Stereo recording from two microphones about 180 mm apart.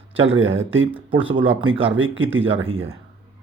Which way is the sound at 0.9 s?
30° right (ahead or behind).